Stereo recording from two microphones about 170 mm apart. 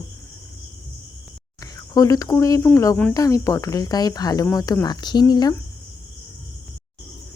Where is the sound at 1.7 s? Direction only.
20° left (ahead or behind).